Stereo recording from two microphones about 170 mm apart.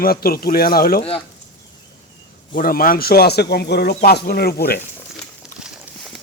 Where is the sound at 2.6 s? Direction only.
55° left (ahead or behind).